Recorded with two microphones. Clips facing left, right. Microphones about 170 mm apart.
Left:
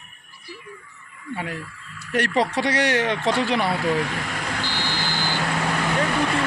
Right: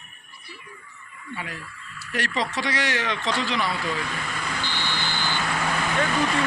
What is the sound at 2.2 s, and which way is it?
A man's voice, 60° left (ahead or behind).